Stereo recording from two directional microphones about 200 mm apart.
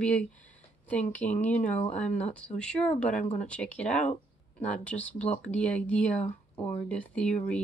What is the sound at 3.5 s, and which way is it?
Speech, 5° left (ahead or behind).